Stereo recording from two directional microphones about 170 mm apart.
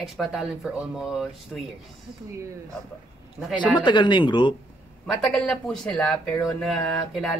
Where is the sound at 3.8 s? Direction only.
25° left (ahead or behind).